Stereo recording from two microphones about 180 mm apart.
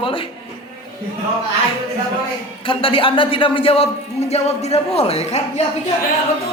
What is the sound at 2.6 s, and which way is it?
Speech, 30° left (ahead or behind).